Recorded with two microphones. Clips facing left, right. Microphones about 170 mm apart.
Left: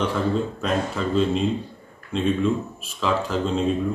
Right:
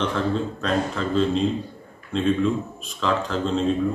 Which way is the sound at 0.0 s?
10° left (ahead or behind).